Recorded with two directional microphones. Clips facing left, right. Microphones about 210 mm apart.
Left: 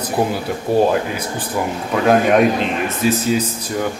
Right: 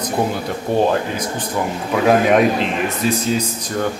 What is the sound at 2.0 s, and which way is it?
Speech, centre (ahead or behind).